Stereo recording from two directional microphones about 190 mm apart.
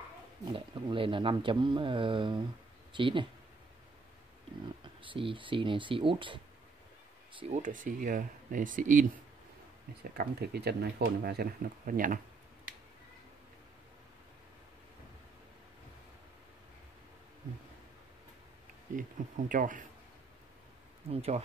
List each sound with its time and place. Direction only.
0.5 s speech: 25° right (ahead or behind)
4.8 s speech: 25° right (ahead or behind); by 9.0 s 45° right (ahead or behind)
10.1 s speech: 55° right (ahead or behind)
19.2 s speech: 45° right (ahead or behind)
21.1 s speech: 35° right (ahead or behind)